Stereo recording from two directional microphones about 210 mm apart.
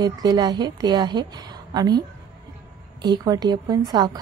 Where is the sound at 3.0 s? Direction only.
20° right (ahead or behind).